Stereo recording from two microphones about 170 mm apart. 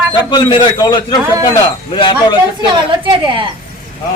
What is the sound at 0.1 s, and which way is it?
A man's voice, 25° left (ahead or behind).